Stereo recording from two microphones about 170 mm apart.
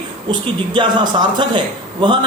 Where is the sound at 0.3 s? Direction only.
25° right (ahead or behind).